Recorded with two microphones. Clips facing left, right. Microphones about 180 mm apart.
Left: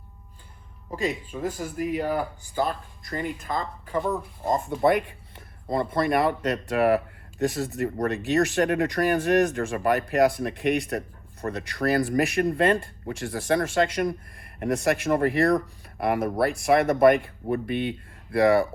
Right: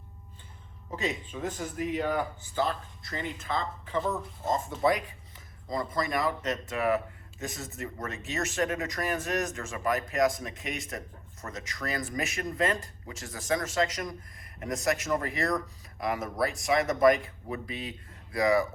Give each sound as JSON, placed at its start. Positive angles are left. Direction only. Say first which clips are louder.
{"t": 0.9, "sound": "speech", "louder": "left 5 dB", "side_deg": 10}
{"t": 2.6, "sound": "speech", "louder": "left 3 dB", "side_deg": 55}
{"t": 3.2, "sound": "speech", "louder": "left 1 dB", "side_deg": 15}
{"t": 4.4, "sound": "speech", "louder": "left 4 dB", "side_deg": 55}
{"t": 4.8, "sound": "a sound", "louder": "left 6 dB", "side_deg": 60}
{"t": 5.9, "sound": "speech", "louder": "left 7 dB", "side_deg": 60}